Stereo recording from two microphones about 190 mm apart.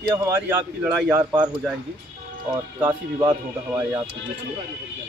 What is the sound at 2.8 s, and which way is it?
Speech, 10° right (ahead or behind).